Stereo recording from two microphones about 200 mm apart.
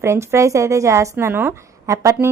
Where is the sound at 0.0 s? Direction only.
15° right (ahead or behind).